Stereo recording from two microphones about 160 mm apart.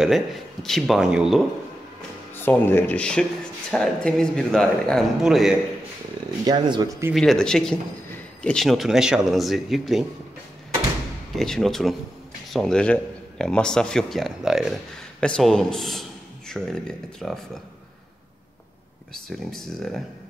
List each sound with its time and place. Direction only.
0.0 s a man's voice: centre (ahead or behind)
2.4 s a man's voice: 10° left (ahead or behind)
6.4 s speech: 25° right (ahead or behind)
7.2 s a man's voice: 5° left (ahead or behind)
11.3 s a man's voice: centre (ahead or behind)
19.1 s a man's voice: centre (ahead or behind)